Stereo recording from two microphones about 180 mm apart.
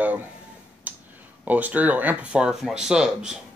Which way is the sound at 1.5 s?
10° right (ahead or behind).